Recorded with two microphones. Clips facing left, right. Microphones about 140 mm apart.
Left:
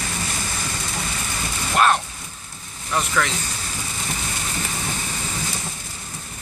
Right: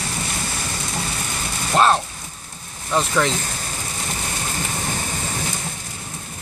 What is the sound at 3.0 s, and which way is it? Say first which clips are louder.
Speech: right 3 dB; 25° right (ahead or behind).